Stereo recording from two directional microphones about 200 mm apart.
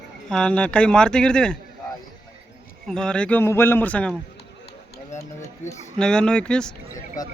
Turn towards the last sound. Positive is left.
turn(degrees=20)  # may be behind; listen again after turning